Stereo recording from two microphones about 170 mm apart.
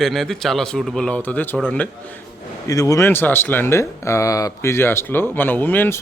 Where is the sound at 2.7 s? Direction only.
20° left (ahead or behind).